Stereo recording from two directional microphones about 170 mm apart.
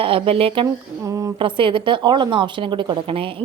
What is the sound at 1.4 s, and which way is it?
A woman's voice, 30° right (ahead or behind).